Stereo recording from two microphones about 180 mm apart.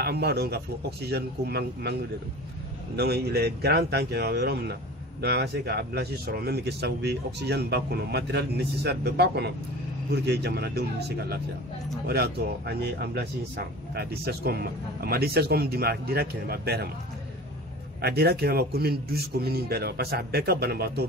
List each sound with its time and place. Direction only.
0.0 s speech: 65° right (ahead or behind)
3.0 s speech: 65° right (ahead or behind)
18.0 s speech: 60° right (ahead or behind)